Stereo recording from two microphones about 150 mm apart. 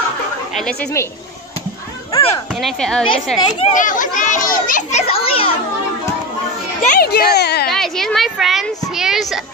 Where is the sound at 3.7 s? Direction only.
60° left (ahead or behind); by 5.5 s 40° left (ahead or behind).